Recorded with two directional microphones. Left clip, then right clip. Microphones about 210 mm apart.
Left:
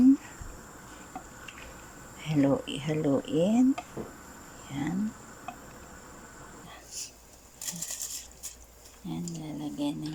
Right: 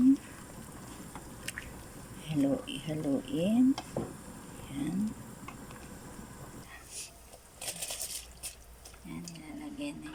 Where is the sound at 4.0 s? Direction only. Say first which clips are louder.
Right 2 dB; 35° right (ahead or behind).